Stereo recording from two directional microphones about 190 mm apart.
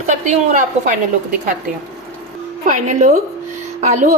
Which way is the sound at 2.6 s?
40° right (ahead or behind).